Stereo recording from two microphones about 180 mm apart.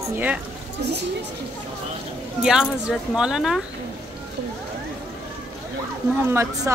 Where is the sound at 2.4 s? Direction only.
5° right (ahead or behind).